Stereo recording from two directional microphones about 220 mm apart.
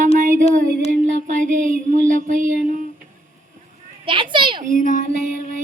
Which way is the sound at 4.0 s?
20° right (ahead or behind).